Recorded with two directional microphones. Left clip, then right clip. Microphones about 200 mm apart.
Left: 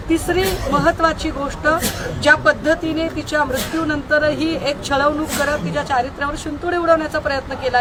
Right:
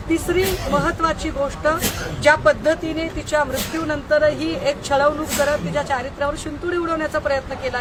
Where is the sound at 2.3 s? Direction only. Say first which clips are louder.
Left 1 dB; 10° left (ahead or behind).